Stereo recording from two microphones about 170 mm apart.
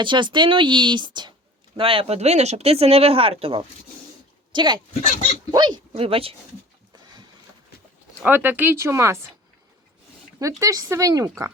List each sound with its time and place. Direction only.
0.0 s speech: 30° right (ahead or behind)
8.2 s speech: 10° right (ahead or behind)
10.6 s speech: 20° right (ahead or behind)